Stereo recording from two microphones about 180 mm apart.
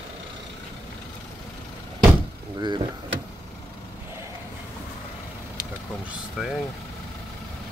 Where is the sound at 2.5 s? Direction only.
25° right (ahead or behind).